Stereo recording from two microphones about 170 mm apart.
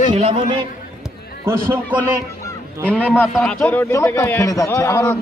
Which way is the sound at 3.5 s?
10° left (ahead or behind).